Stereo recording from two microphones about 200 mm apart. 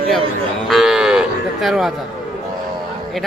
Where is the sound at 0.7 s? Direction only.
Centre (ahead or behind).